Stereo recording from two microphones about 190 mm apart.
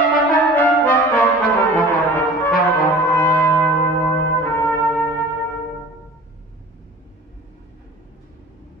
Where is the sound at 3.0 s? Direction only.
10° left (ahead or behind).